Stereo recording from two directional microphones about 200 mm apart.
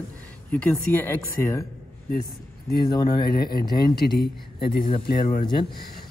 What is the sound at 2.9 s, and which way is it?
Speech, 20° left (ahead or behind).